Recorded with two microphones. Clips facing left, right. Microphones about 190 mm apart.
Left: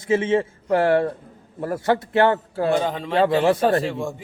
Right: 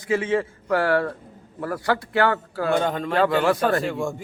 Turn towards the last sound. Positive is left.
turn(degrees=0)  # may be behind; listen again after turning